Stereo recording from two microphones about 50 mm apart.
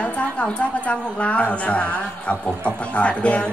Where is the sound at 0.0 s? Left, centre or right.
Left.